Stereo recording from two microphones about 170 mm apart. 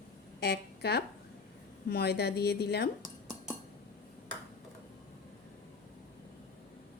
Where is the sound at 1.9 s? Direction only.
70° left (ahead or behind).